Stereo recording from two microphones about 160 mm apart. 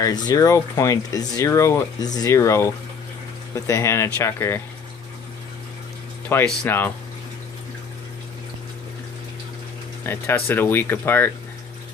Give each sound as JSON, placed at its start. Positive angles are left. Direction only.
{"t": 0.0, "sound": "speech", "side_deg": 25}
{"t": 6.2, "sound": "speech", "side_deg": 10}
{"t": 10.0, "sound": "speech", "side_deg": 10}